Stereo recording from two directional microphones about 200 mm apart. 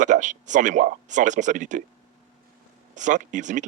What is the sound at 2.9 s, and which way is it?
Speech, 40° right (ahead or behind).